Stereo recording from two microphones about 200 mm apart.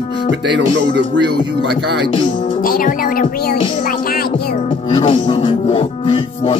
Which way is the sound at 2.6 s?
45° left (ahead or behind).